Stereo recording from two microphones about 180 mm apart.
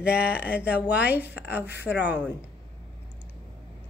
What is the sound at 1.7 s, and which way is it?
Speech, 70° left (ahead or behind).